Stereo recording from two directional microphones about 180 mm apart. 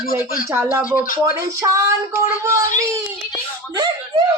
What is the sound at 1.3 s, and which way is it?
Speech, 15° right (ahead or behind).